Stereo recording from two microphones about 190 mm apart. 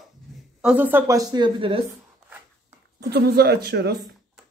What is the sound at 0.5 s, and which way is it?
A woman's voice, 5° right (ahead or behind).